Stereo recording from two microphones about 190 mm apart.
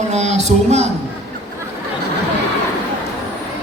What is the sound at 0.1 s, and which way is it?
Speech, 35° right (ahead or behind).